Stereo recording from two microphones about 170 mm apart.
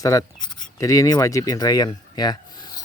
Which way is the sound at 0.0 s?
20° left (ahead or behind).